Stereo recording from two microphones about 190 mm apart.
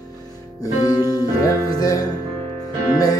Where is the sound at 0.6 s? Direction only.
20° left (ahead or behind).